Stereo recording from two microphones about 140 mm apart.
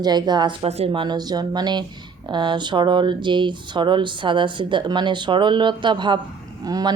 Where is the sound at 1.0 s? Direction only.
30° right (ahead or behind).